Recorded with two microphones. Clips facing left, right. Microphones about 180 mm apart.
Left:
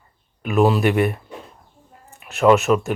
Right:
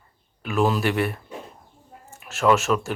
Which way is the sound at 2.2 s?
Centre (ahead or behind).